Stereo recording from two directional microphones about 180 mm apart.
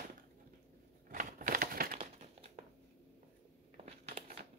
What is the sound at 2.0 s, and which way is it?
Crumpling, 35° right (ahead or behind).